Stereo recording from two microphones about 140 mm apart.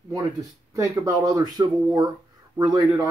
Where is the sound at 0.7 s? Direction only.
25° right (ahead or behind).